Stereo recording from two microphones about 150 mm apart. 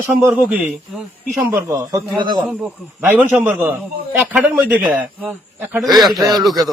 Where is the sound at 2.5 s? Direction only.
5° right (ahead or behind).